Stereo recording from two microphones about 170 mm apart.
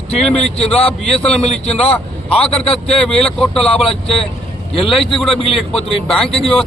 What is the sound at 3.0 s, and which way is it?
Speech, 5° left (ahead or behind).